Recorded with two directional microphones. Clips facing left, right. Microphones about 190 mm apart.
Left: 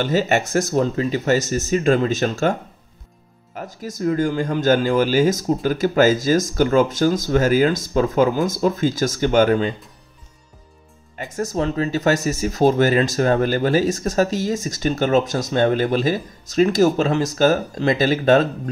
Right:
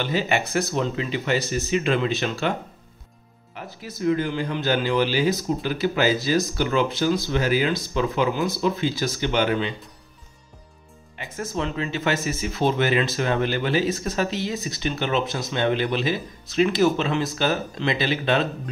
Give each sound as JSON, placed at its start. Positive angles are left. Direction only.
{"t": 0.0, "sound": "speech", "side_deg": 45}
{"t": 3.5, "sound": "speech", "side_deg": 45}
{"t": 11.1, "sound": "speech", "side_deg": 45}